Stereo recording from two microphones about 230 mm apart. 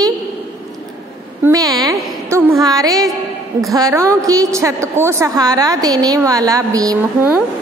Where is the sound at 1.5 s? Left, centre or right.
Centre.